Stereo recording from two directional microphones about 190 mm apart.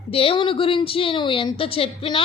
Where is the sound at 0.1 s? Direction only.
30° left (ahead or behind).